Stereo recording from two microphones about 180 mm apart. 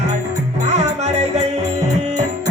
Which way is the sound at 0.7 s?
40° right (ahead or behind).